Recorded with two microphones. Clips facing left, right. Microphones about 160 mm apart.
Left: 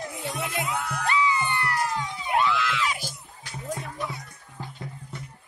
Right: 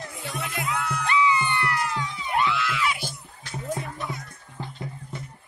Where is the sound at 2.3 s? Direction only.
Centre (ahead or behind).